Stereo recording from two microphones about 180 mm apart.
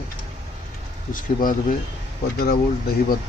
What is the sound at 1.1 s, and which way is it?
Speech, 50° left (ahead or behind).